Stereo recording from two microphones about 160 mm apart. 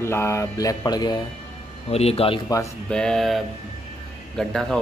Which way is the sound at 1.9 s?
40° left (ahead or behind).